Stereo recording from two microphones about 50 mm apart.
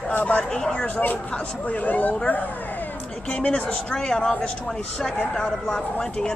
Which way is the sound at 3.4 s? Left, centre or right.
Left.